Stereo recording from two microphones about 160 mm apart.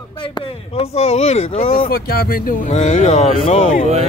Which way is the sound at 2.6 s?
45° left (ahead or behind).